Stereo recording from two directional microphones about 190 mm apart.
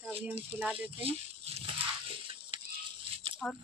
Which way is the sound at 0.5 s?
5° right (ahead or behind).